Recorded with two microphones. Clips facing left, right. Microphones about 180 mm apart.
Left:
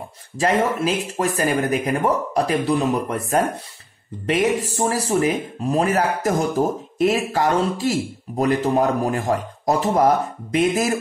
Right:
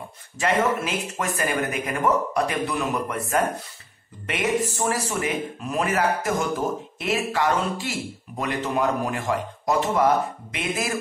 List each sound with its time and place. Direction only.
0.4 s speech: 35° left (ahead or behind)